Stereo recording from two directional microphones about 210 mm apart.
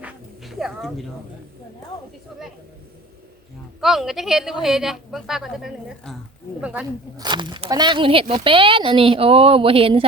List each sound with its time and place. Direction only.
0.0 s music: centre (ahead or behind)
3.8 s a man's voice: centre (ahead or behind)
7.2 s speech: 20° right (ahead or behind)